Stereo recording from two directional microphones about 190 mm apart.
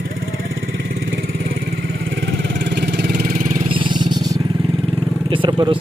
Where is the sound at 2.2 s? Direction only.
65° right (ahead or behind); by 3.6 s 45° right (ahead or behind).